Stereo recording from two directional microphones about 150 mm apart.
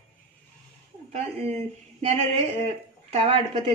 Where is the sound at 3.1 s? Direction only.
40° right (ahead or behind).